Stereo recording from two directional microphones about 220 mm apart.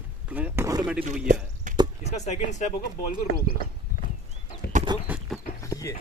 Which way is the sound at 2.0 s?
30° left (ahead or behind).